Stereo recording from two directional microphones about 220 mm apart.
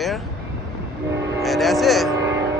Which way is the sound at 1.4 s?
Centre (ahead or behind).